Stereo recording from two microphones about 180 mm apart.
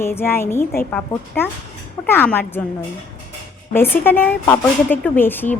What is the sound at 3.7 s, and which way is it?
A woman's voice, 10° left (ahead or behind).